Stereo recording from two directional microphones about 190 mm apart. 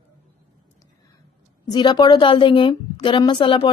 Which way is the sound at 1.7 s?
25° left (ahead or behind).